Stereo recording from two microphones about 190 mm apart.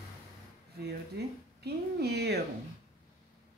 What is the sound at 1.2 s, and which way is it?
Speech, 60° right (ahead or behind).